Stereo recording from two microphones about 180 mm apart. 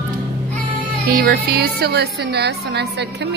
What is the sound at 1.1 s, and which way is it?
A woman's voice, 60° right (ahead or behind).